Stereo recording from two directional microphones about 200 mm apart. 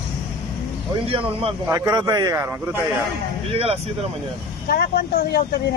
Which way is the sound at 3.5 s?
30° right (ahead or behind).